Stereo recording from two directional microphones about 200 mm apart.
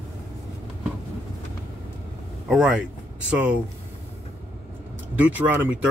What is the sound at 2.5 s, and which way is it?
Speech, 5° right (ahead or behind).